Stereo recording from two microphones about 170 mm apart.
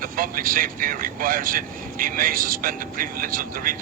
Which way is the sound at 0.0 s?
55° right (ahead or behind).